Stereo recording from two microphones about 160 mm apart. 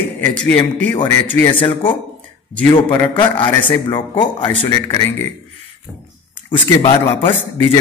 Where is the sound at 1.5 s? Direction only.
30° left (ahead or behind).